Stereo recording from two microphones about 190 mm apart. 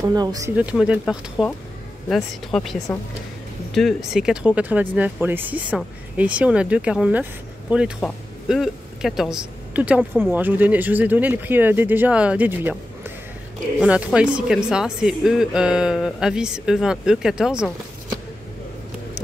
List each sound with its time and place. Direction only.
0.0 s speech: 20° right (ahead or behind)
0.6 s a woman's voice: 5° right (ahead or behind)